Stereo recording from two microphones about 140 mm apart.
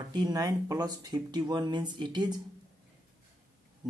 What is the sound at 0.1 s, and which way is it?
Speech, 30° right (ahead or behind).